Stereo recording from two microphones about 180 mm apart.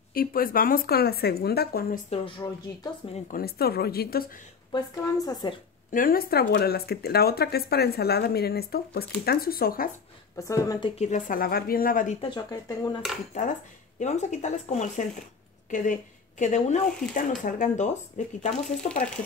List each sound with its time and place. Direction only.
0.1 s speech: 55° left (ahead or behind)
2.0 s a woman's voice: 30° left (ahead or behind)
3.3 s speech: 55° left (ahead or behind)
4.7 s a woman's voice: 20° left (ahead or behind)
5.9 s speech: 50° left (ahead or behind)
10.3 s a woman's voice: 20° left (ahead or behind)
11.0 s speech: 45° left (ahead or behind)
12.4 s a woman's voice: 20° left (ahead or behind)
13.3 s a woman's voice: 45° left (ahead or behind)